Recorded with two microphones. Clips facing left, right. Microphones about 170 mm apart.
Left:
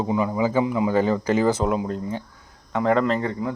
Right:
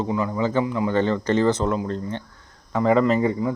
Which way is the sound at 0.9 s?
10° left (ahead or behind).